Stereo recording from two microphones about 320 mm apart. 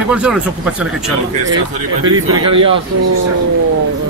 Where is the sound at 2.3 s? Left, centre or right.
Centre.